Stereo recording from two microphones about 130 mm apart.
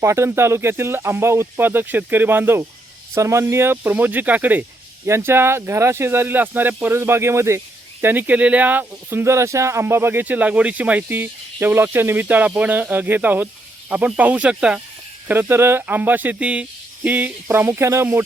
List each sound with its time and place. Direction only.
0.0 s speech: 20° right (ahead or behind)